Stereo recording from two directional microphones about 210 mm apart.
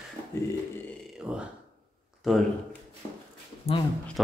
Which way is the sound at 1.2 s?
5° right (ahead or behind).